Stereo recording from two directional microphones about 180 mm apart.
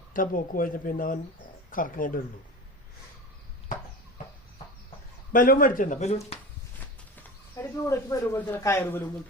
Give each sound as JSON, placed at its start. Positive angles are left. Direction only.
{"t": 0.1, "sound": "speech", "side_deg": 50}
{"t": 5.3, "sound": "speech", "side_deg": 50}
{"t": 6.7, "sound": "a sound", "side_deg": 10}
{"t": 8.4, "sound": "a man's voice", "side_deg": 10}